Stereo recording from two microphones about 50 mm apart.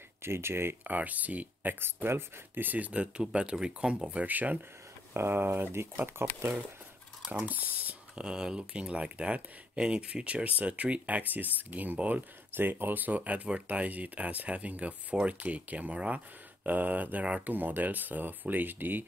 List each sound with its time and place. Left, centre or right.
0.2 s speech: right
0.8 s speech: right
2.0 s speech: right
4.3 s speech: right
5.1 s speech: right
7.4 s speech: right
8.2 s speech: centre; by 19.0 s right